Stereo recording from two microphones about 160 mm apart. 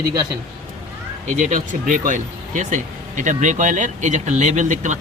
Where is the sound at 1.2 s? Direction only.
50° right (ahead or behind).